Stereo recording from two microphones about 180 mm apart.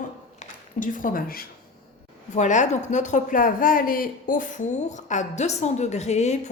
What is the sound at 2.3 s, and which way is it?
A woman's voice, 40° left (ahead or behind).